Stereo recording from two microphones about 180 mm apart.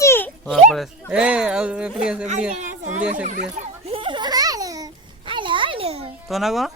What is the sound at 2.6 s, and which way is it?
Chatter, 45° right (ahead or behind).